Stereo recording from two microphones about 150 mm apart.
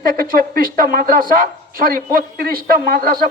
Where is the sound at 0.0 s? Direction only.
75° right (ahead or behind).